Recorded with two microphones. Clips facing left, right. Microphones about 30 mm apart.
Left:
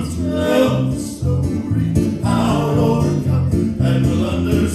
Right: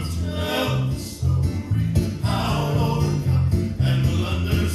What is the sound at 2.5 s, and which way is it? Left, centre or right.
Music, centre.